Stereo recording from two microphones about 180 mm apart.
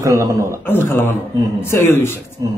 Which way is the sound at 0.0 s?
15° right (ahead or behind).